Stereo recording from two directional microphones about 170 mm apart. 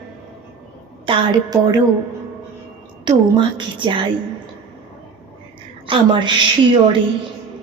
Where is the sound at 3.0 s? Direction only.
25° right (ahead or behind).